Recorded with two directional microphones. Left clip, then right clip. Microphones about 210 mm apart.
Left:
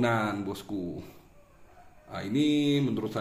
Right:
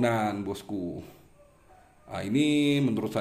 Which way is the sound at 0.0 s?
10° right (ahead or behind).